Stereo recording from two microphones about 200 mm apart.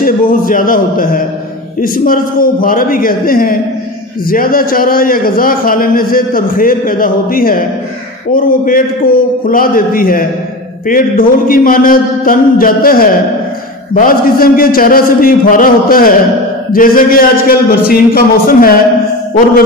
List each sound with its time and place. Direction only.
0.0 s a man's voice: 45° left (ahead or behind)